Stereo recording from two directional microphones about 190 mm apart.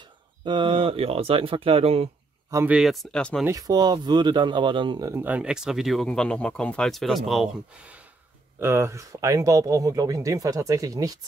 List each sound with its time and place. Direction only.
0.0 s speech: 25° right (ahead or behind)
2.5 s speech: 10° right (ahead or behind)
3.4 s speech: 20° right (ahead or behind)